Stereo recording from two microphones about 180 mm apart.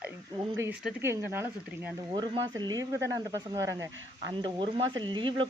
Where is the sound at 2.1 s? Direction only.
25° right (ahead or behind).